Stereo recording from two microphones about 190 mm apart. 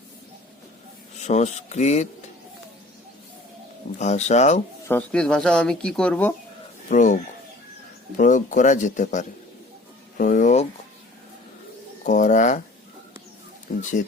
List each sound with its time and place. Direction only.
1.2 s speech: 35° left (ahead or behind)
3.9 s speech: 40° left (ahead or behind)
4.9 s speech: 5° left (ahead or behind)
6.8 s speech: 40° left (ahead or behind)
12.0 s speech: 40° left (ahead or behind)
13.7 s speech: 45° left (ahead or behind)